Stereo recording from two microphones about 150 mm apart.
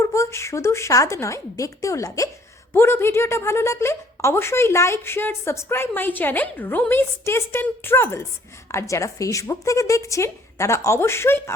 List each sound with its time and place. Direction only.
0.0 s a woman's voice: 20° left (ahead or behind)